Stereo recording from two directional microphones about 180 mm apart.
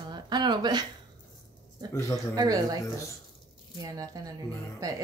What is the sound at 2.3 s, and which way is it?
Speech, 20° right (ahead or behind).